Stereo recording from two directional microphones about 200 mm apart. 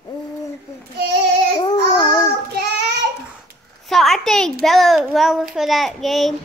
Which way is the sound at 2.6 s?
55° right (ahead or behind).